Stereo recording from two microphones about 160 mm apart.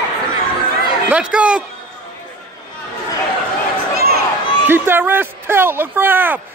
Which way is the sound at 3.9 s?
70° right (ahead or behind).